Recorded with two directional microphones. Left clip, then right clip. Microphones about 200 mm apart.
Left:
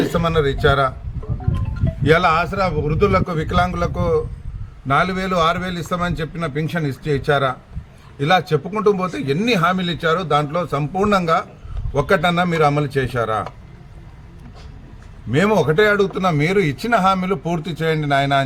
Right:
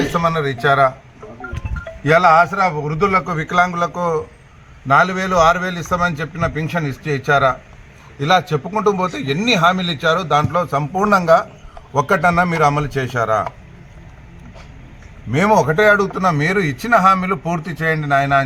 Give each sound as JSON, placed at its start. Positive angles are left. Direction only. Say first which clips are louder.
{"t": 0.3, "sound": "a man's voice", "louder": "left 3 dB", "side_deg": 15}
{"t": 2.0, "sound": "a man's voice", "louder": "right 4 dB", "side_deg": 20}
{"t": 15.3, "sound": "a man's voice", "louder": "right 2 dB", "side_deg": 20}